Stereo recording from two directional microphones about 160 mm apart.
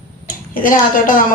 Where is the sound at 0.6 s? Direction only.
60° left (ahead or behind).